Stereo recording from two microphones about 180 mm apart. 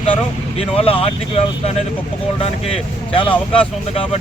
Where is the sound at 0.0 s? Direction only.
35° left (ahead or behind).